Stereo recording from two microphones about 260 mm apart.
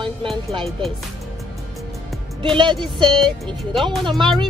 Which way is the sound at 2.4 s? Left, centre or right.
Centre.